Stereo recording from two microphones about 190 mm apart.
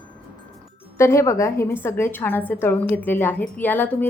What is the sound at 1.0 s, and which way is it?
A woman's voice, 15° left (ahead or behind).